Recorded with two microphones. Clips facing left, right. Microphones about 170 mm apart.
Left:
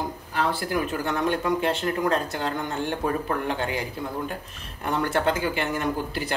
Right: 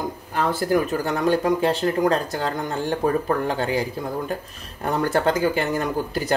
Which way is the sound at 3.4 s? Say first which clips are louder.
Right 4 dB; 35° right (ahead or behind).